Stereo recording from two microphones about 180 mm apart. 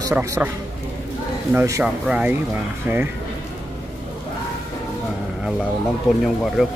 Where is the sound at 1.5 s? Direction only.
15° right (ahead or behind).